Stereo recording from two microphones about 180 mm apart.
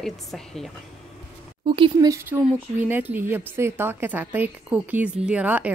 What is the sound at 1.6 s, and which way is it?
Speech, 30° right (ahead or behind).